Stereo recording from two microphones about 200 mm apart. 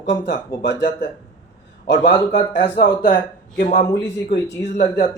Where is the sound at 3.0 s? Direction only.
45° left (ahead or behind).